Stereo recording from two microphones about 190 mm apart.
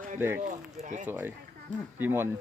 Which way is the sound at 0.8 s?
40° right (ahead or behind).